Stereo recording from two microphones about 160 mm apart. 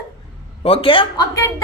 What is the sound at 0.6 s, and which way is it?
Speech, 35° left (ahead or behind).